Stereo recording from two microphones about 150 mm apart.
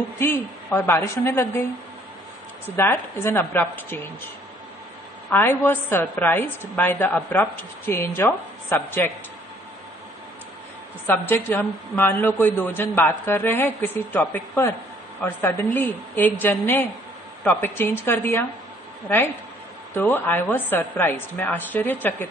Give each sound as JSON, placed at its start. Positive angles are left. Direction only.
{"t": 0.2, "sound": "a woman's voice", "side_deg": 15}
{"t": 2.6, "sound": "a woman's voice", "side_deg": 15}
{"t": 5.3, "sound": "a woman's voice", "side_deg": 15}
{"t": 11.1, "sound": "a woman's voice", "side_deg": 15}